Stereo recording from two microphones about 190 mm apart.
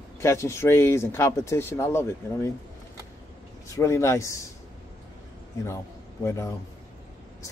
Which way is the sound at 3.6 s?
15° left (ahead or behind).